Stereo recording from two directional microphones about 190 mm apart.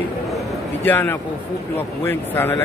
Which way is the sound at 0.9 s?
10° left (ahead or behind).